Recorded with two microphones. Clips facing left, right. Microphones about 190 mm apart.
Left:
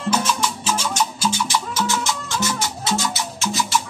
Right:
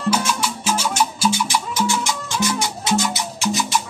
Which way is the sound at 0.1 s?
10° right (ahead or behind).